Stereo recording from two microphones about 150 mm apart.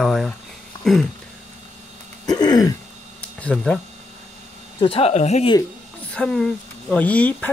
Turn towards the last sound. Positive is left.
turn(degrees=10)  # may be behind; listen again after turning